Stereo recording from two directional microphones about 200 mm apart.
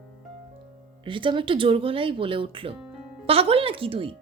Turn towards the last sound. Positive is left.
turn(degrees=-25)  # may be behind; listen again after turning